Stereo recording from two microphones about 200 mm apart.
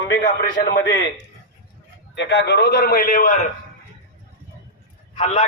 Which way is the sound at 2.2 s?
60° left (ahead or behind).